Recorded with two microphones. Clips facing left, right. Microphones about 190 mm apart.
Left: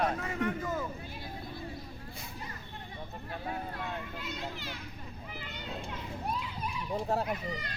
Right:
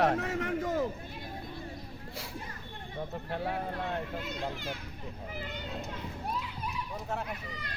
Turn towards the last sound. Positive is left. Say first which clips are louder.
# left 5 dB
turn(degrees=35)  # may be behind; listen again after turning